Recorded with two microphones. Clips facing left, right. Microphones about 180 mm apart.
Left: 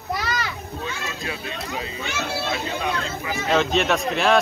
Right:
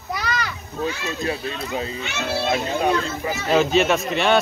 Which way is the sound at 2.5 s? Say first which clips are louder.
Right 9 dB; 40° right (ahead or behind).